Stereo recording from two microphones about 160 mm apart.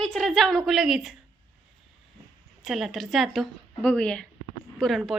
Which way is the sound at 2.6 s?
Centre (ahead or behind).